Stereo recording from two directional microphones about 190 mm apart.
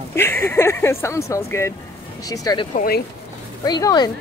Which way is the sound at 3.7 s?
20° left (ahead or behind).